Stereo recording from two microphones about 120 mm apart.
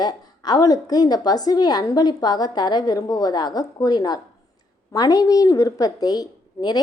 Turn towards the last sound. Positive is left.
turn(degrees=35)  # may be behind; listen again after turning